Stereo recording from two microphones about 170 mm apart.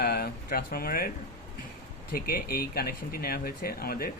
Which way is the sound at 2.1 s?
60° left (ahead or behind).